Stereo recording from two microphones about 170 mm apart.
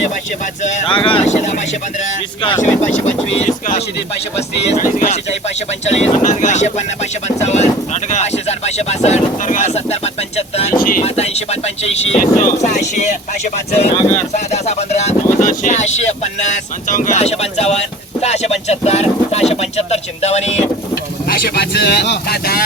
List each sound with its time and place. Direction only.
0.6 s speech: 45° left (ahead or behind)
0.9 s speech: 30° left (ahead or behind)
3.3 s speech: 40° left (ahead or behind)
10.8 s speech: 55° left (ahead or behind)
11.0 s speech: 40° left (ahead or behind)
20.9 s speech: 65° left (ahead or behind)